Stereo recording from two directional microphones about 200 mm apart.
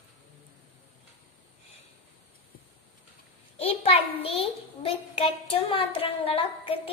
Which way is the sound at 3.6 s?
30° left (ahead or behind).